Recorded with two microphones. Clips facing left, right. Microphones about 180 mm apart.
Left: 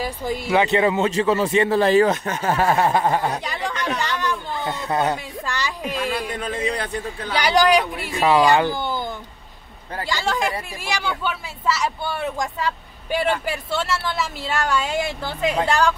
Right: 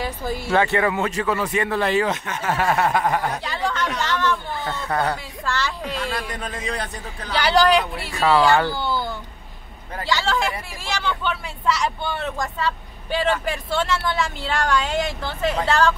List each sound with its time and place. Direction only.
0.0 s speech: 15° left (ahead or behind)
3.4 s speech: 15° left (ahead or behind)
7.3 s speech: 15° left (ahead or behind)